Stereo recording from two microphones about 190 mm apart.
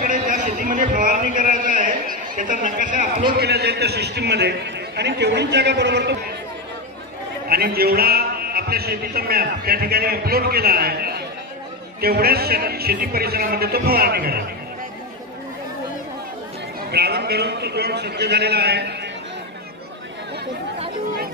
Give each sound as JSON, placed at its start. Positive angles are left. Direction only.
{"t": 0.0, "sound": "a sound", "side_deg": -45}
{"t": 2.8, "sound": "a man's voice", "side_deg": -45}
{"t": 7.4, "sound": "a man's voice", "side_deg": -55}
{"t": 16.9, "sound": "a man's voice", "side_deg": -60}